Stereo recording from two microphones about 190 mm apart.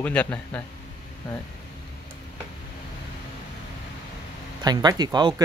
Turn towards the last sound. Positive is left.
turn(degrees=-20)  # may be behind; listen again after turning